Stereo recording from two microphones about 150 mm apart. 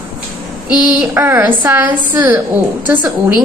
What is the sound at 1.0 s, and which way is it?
A woman's voice, 15° right (ahead or behind).